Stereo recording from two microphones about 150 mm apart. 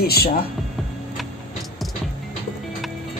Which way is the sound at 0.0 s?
90° left.